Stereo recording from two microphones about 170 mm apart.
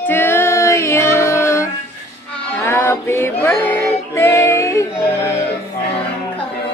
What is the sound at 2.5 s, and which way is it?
Female singing, 15° left (ahead or behind).